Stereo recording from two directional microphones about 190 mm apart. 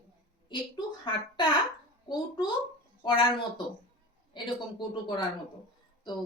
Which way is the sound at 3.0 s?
25° left (ahead or behind).